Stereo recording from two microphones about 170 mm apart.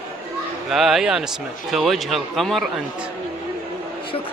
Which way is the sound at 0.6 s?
Centre (ahead or behind).